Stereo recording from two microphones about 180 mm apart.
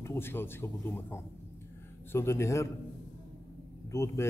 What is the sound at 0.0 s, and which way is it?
A man's voice, 15° left (ahead or behind).